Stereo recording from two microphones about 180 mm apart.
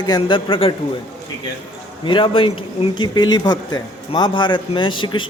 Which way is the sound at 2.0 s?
30° left (ahead or behind).